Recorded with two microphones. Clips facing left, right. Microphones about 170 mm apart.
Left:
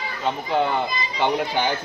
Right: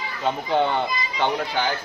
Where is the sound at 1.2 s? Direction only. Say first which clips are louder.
Left 2 dB; 15° left (ahead or behind).